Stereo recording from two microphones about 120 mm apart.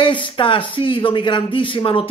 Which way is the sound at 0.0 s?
45° left (ahead or behind).